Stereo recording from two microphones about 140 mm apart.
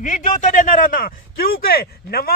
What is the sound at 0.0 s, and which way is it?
A man's voice, 65° left (ahead or behind).